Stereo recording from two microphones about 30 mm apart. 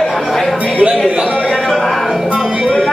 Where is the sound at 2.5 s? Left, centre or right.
Right.